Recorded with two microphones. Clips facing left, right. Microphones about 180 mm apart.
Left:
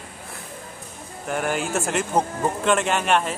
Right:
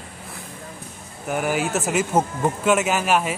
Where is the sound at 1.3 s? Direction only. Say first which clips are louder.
Right 2 dB; 5° right (ahead or behind).